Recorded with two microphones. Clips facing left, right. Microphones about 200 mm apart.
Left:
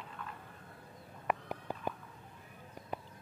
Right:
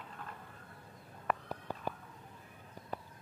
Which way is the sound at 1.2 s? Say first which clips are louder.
Left 1 dB; 15° left (ahead or behind).